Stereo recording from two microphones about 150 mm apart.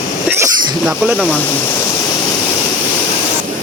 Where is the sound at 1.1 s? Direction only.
5° left (ahead or behind).